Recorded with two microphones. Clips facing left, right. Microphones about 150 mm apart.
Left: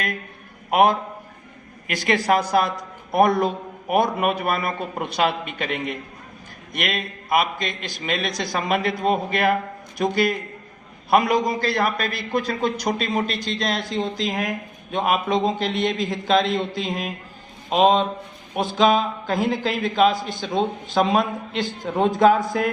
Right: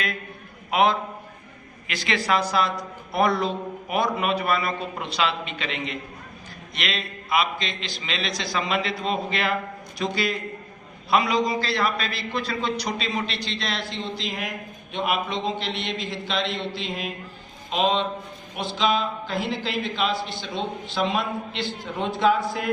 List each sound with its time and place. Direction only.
0.7 s a man's voice: 50° left (ahead or behind)